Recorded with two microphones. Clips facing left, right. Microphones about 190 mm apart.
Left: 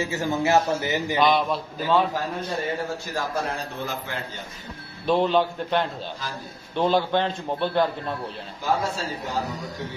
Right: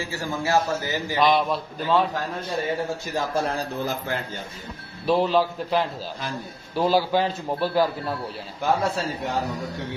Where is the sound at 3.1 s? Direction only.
30° right (ahead or behind).